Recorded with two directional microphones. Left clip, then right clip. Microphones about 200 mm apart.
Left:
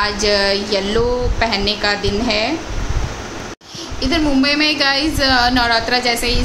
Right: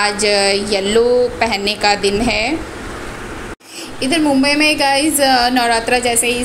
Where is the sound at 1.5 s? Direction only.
35° left (ahead or behind).